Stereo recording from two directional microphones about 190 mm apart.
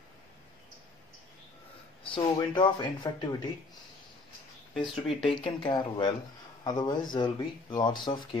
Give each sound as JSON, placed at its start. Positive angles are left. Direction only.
{"t": 2.1, "sound": "speech", "side_deg": 25}
{"t": 5.0, "sound": "speech", "side_deg": 25}